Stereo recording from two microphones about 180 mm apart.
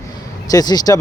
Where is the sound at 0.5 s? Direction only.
20° left (ahead or behind).